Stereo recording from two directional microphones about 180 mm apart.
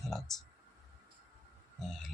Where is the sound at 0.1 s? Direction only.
Centre (ahead or behind).